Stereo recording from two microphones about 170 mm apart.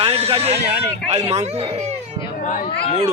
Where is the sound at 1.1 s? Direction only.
40° right (ahead or behind).